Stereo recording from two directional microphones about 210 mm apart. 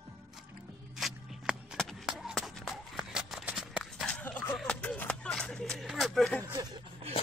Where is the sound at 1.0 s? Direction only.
Centre (ahead or behind).